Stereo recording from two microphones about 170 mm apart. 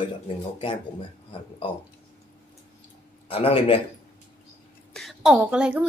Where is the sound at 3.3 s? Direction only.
35° left (ahead or behind).